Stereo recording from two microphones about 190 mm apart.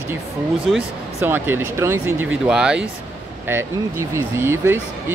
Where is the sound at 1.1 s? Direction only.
10° right (ahead or behind).